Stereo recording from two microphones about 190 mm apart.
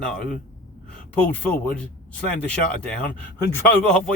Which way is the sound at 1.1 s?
5° left (ahead or behind).